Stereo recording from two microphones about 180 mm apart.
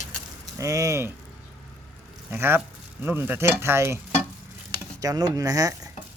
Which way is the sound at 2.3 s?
10° right (ahead or behind).